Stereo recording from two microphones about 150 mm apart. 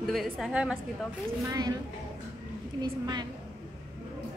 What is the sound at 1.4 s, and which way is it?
Speech, 25° right (ahead or behind).